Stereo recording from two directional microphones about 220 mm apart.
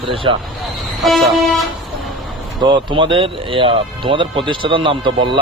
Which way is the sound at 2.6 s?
20° right (ahead or behind).